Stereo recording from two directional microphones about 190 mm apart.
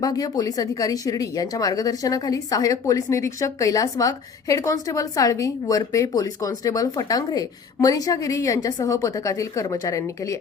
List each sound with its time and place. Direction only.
0.0 s a woman's voice: 20° left (ahead or behind)